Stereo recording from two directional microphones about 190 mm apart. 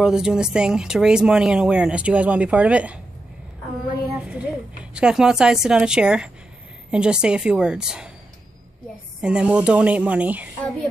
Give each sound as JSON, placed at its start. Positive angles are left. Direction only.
{"t": 0.0, "sound": "speech", "side_deg": -5}
{"t": 4.2, "sound": "a woman's voice", "side_deg": -5}
{"t": 9.2, "sound": "a woman's voice", "side_deg": -5}